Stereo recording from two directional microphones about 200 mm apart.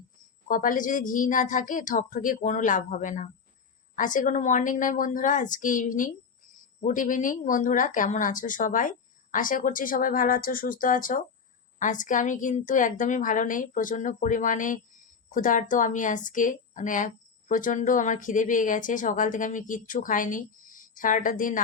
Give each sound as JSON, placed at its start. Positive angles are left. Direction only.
{"t": 0.4, "sound": "speech", "side_deg": 40}